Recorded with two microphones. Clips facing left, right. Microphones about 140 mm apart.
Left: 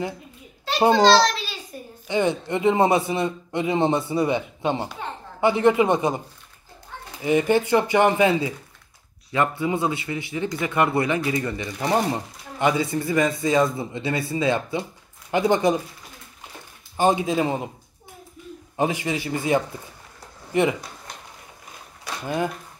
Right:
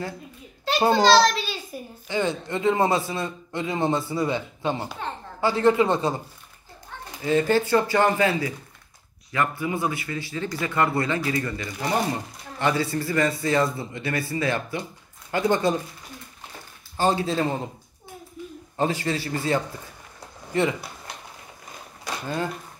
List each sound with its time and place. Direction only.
0.9 s a child's voice: centre (ahead or behind)
2.0 s a man's voice: 20° left (ahead or behind)
7.2 s a man's voice: 15° left (ahead or behind)
16.9 s a man's voice: 15° left (ahead or behind)
18.8 s a man's voice: 15° left (ahead or behind)
22.0 s a sound: 15° left (ahead or behind)